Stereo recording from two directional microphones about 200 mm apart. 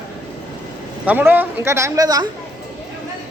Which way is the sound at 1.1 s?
10° right (ahead or behind).